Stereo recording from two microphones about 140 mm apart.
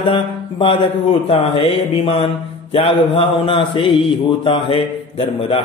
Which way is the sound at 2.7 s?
45° left (ahead or behind).